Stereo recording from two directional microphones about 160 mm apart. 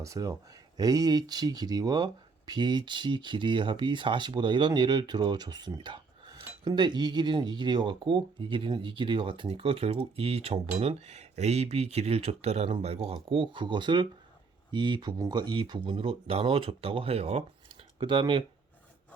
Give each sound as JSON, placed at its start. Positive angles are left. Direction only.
{"t": 0.0, "sound": "speech", "side_deg": -20}